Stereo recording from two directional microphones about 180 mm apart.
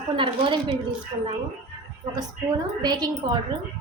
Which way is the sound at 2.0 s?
20° right (ahead or behind).